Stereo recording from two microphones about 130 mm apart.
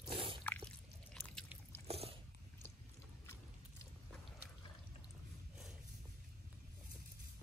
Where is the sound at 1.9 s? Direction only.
50° right (ahead or behind).